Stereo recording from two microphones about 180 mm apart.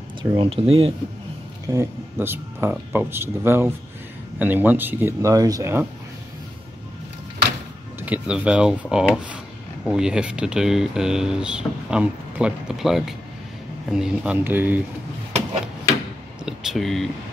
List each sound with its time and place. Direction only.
0.2 s speech: 25° right (ahead or behind)
1.7 s speech: 15° right (ahead or behind)
8.0 s speech: 5° right (ahead or behind)
16.4 s speech: centre (ahead or behind)